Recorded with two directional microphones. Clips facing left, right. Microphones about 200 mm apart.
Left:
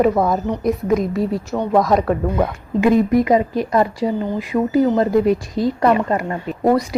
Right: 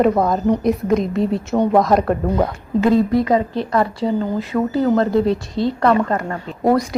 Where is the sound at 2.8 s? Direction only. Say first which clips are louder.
Left 1 dB; 15° left (ahead or behind).